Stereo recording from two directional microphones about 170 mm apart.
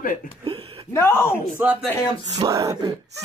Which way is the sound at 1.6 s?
10° right (ahead or behind).